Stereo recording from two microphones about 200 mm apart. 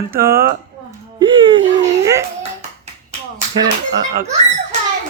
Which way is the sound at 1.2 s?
25° right (ahead or behind).